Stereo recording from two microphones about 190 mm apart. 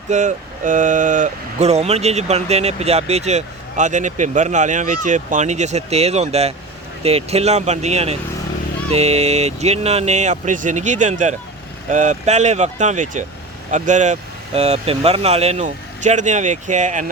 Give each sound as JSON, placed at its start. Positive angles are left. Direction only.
{"t": 0.1, "sound": "speech", "side_deg": -40}